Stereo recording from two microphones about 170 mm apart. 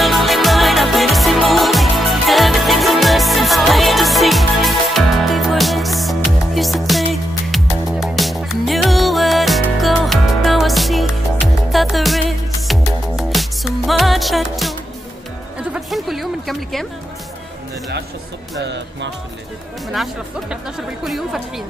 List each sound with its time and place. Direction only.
0.0 s music: centre (ahead or behind)
15.7 s a sound: centre (ahead or behind)
18.6 s music: 90° right
19.9 s speech: centre (ahead or behind)